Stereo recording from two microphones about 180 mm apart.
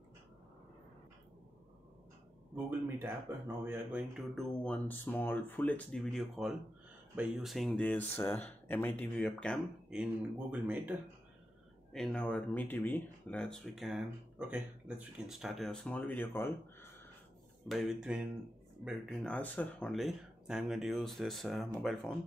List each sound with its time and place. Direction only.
2.5 s speech: 10° right (ahead or behind)
4.4 s speech: 10° left (ahead or behind); by 11.0 s 10° right (ahead or behind)
11.9 s speech: 5° left (ahead or behind)
17.6 s speech: centre (ahead or behind)